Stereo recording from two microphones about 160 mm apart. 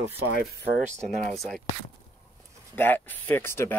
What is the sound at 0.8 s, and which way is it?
Speech, 45° right (ahead or behind).